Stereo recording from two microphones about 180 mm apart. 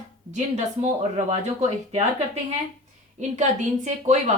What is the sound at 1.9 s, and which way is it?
A woman's voice, 35° right (ahead or behind).